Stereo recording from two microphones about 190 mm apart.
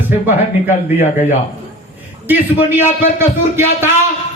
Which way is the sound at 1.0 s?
35° left (ahead or behind).